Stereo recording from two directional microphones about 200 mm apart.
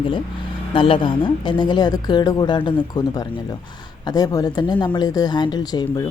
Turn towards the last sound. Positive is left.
turn(degrees=20)  # may be behind; listen again after turning